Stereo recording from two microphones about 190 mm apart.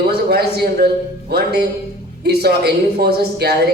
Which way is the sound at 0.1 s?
55° right (ahead or behind).